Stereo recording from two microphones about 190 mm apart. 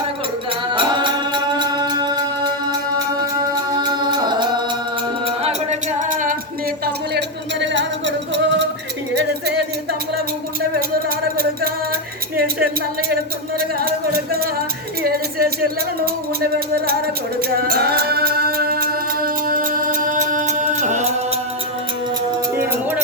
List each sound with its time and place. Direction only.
0.7 s music: 25° right (ahead or behind); by 6.3 s 45° right (ahead or behind)
6.8 s music: 60° right (ahead or behind)
15.0 s music: 55° right (ahead or behind)
17.7 s music: 55° right (ahead or behind); by 21.1 s 40° right (ahead or behind)
22.5 s a sound: 10° right (ahead or behind)